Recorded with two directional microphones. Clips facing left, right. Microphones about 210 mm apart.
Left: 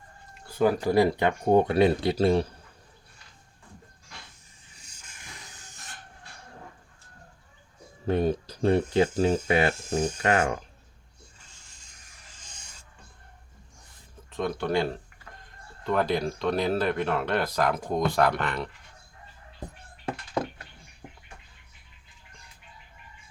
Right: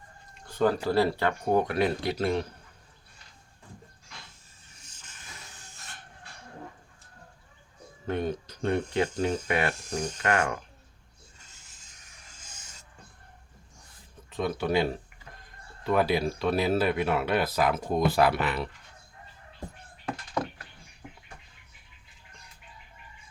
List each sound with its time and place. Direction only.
0.4 s a sound: 10° left (ahead or behind)
0.9 s speech: 15° left (ahead or behind); by 2.5 s 30° left (ahead or behind)
4.9 s hiss: 10° left (ahead or behind)
8.0 s speech: 30° left (ahead or behind)
11.4 s rub: 5° right (ahead or behind)
14.3 s speech: centre (ahead or behind)
20.3 s a sound: 25° left (ahead or behind)